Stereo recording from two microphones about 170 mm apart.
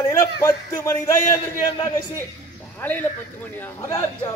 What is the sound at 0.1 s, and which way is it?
A man's voice, 15° left (ahead or behind).